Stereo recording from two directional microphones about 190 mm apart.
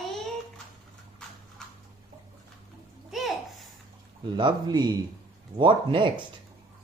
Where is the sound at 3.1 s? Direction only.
Centre (ahead or behind).